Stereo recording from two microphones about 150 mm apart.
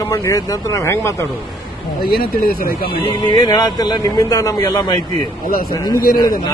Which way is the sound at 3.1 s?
25° left (ahead or behind).